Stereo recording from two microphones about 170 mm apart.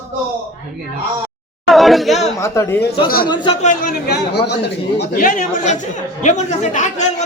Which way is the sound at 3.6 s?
50° left (ahead or behind).